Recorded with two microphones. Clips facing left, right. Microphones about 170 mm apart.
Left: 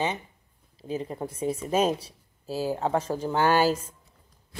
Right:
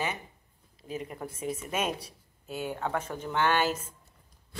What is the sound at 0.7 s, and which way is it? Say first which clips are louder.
A woman's voice: left 6 dB; 30° left (ahead or behind).